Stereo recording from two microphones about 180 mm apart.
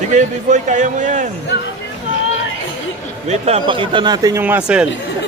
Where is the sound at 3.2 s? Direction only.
35° right (ahead or behind); by 4.9 s 5° right (ahead or behind).